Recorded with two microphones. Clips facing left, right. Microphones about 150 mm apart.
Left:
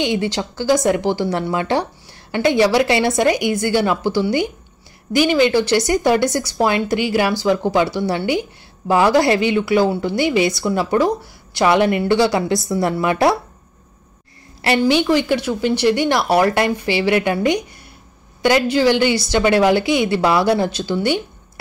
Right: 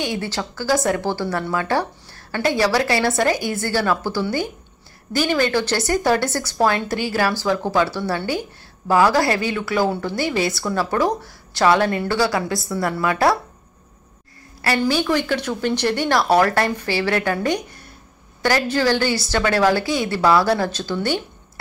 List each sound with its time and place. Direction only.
0.0 s a woman's voice: 20° left (ahead or behind)
14.6 s a woman's voice: 20° left (ahead or behind)